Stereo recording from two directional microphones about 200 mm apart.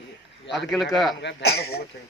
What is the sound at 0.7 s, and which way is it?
Speech, centre (ahead or behind).